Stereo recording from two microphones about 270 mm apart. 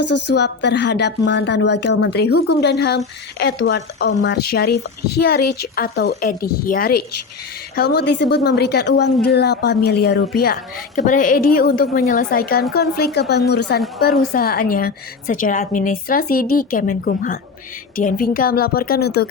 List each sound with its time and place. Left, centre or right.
0.0 s a woman's voice: left
0.3 s a woman's voice: left